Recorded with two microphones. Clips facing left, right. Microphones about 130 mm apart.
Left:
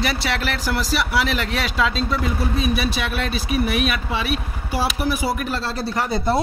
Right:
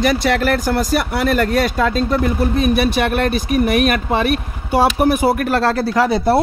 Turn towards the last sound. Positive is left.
turn(degrees=-90)